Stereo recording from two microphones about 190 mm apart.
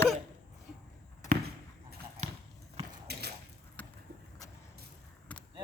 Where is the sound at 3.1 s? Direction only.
60° right (ahead or behind).